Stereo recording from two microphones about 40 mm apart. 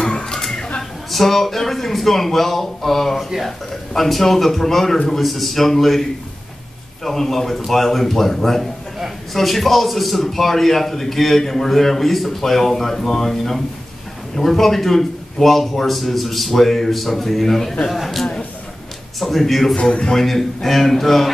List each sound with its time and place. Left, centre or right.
0.0 s a sound: centre
1.1 s a man's voice: centre
7.1 s a man's voice: centre
19.8 s a man's voice: left
20.2 s a man's voice: centre